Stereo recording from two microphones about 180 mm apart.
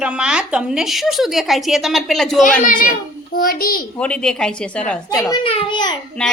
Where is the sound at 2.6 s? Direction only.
50° left (ahead or behind).